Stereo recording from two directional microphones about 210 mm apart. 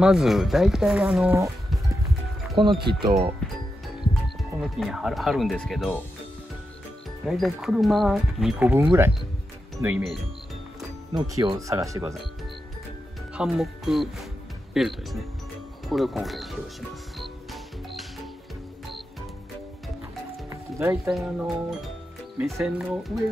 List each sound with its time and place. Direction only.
0.0 s speech: centre (ahead or behind)
2.5 s speech: 25° right (ahead or behind)
4.6 s speech: centre (ahead or behind)
7.2 s speech: centre (ahead or behind)
11.3 s speech: 15° right (ahead or behind)
13.3 s speech: centre (ahead or behind)
17.2 s music: centre (ahead or behind)
20.4 s music: 15° right (ahead or behind)
22.4 s speech: centre (ahead or behind)